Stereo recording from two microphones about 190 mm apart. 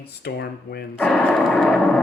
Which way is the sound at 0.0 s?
60° left (ahead or behind).